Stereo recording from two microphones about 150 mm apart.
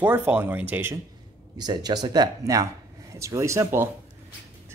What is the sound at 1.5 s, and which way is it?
Speech, 30° right (ahead or behind).